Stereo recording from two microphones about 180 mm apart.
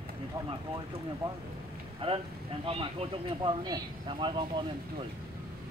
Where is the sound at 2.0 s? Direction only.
30° right (ahead or behind).